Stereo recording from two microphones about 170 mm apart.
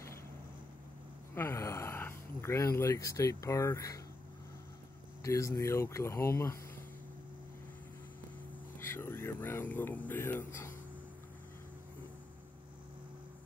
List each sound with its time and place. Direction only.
1.3 s speech: 15° left (ahead or behind)
5.2 s speech: 20° left (ahead or behind)
8.7 s speech: 15° left (ahead or behind)